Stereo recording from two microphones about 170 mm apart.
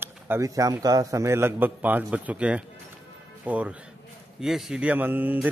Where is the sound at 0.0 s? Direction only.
15° right (ahead or behind).